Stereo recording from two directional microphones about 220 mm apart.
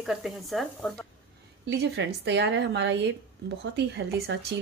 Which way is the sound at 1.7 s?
50° right (ahead or behind).